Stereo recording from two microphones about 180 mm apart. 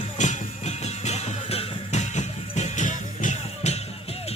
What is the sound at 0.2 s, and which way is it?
Music, 40° left (ahead or behind).